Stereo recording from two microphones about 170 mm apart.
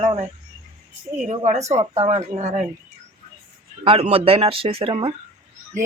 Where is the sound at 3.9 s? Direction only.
35° right (ahead or behind).